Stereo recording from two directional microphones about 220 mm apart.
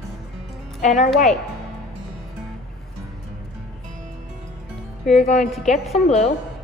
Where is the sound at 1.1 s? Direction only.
Centre (ahead or behind).